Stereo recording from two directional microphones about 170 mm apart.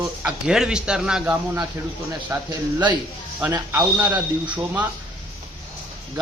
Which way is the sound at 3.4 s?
10° right (ahead or behind).